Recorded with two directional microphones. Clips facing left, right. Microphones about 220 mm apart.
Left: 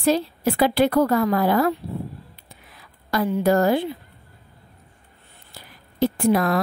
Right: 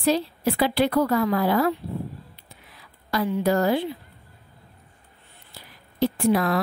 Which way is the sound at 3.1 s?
50° left (ahead or behind).